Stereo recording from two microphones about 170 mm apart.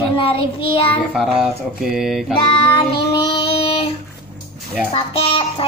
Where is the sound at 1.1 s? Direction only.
5° right (ahead or behind).